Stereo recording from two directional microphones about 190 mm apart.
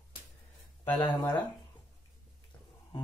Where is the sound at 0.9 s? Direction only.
10° left (ahead or behind).